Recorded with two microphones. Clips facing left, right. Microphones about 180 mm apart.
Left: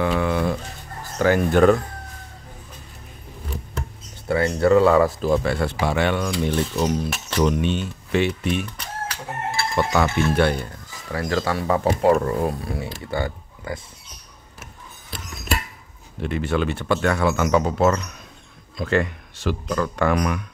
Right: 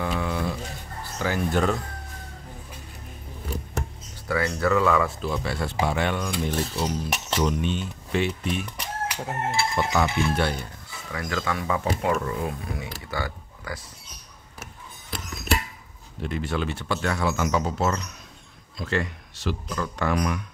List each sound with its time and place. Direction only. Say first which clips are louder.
0.0 s a sound: left 6 dB; 65° left (ahead or behind)
1.1 s speech: left 7 dB; 60° left (ahead or behind)
4.3 s speech: left 6 dB; 30° left (ahead or behind); by 6.3 s 85° left
6.9 s speech: left 4 dB; 65° left (ahead or behind)
8.7 s chicken: right 1 dB; 15° right (ahead or behind)
9.9 s speech: left 5 dB; 60° left (ahead or behind)
11.1 s speech: left 5 dB; 35° left (ahead or behind)
16.2 s speech: left 5 dB; 70° left (ahead or behind)